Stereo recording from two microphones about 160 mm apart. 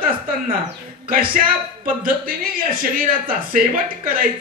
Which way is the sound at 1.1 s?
60° right (ahead or behind).